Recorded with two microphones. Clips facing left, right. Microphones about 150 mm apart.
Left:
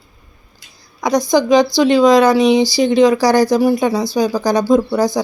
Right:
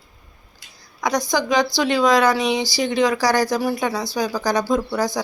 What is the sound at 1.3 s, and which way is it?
Speech, 25° left (ahead or behind).